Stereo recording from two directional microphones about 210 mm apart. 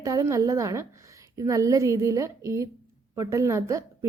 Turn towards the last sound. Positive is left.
turn(degrees=-15)  # may be behind; listen again after turning